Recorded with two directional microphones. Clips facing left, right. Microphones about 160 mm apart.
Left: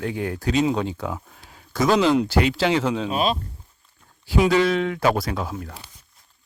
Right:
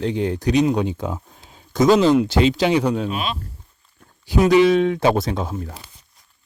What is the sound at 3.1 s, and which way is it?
Speech, 35° left (ahead or behind).